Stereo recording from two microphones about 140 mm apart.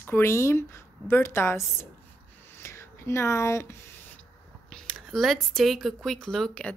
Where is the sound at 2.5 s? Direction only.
20° left (ahead or behind).